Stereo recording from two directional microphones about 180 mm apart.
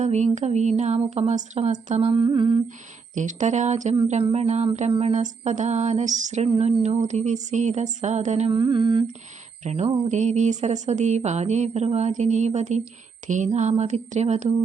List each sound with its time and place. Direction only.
0.0 s speech: 40° right (ahead or behind)
3.2 s speech: 45° right (ahead or behind); by 9.0 s 25° right (ahead or behind)
9.6 s speech: 40° right (ahead or behind)